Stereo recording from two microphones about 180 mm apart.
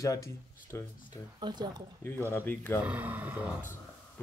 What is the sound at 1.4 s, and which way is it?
Speech, 25° right (ahead or behind).